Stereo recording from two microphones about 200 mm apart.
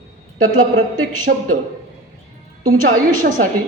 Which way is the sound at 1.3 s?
45° right (ahead or behind).